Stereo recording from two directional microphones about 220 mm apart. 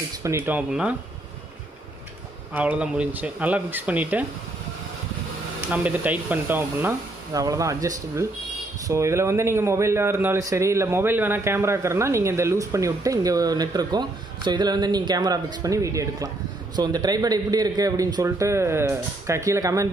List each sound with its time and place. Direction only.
0.2 s a man's voice: 10° right (ahead or behind)
2.5 s a man's voice: 5° right (ahead or behind)
5.7 s a man's voice: 5° right (ahead or behind)